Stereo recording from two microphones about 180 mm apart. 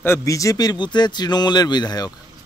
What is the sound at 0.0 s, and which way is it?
A man's voice, 15° left (ahead or behind).